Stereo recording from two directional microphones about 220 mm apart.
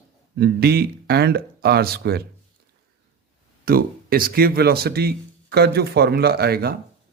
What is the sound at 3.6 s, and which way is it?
Speech, 40° right (ahead or behind).